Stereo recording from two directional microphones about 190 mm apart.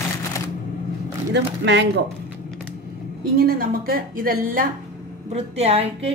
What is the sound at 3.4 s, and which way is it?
A woman's voice, 50° right (ahead or behind).